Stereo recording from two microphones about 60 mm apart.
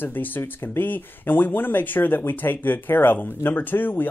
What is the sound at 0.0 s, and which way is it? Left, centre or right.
Speech, left.